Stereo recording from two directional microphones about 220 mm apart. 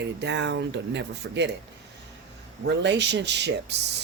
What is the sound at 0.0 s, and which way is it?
Speech, 50° right (ahead or behind).